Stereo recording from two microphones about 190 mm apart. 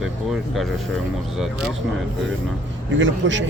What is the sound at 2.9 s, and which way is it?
Speech, 75° right (ahead or behind).